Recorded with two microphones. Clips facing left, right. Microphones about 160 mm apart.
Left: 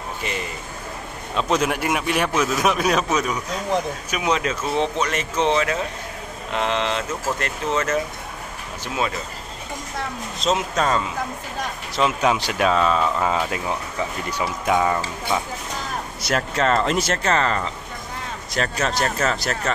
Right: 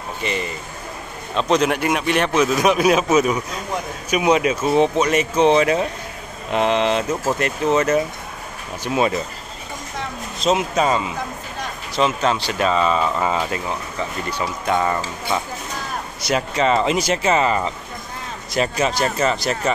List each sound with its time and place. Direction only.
0.2 s speech: 5° left (ahead or behind); by 9.1 s 15° right (ahead or behind)
10.4 s speech: 5° right (ahead or behind)
11.9 s speech: 5° left (ahead or behind)
12.6 s speech: centre (ahead or behind)
16.2 s speech: centre (ahead or behind)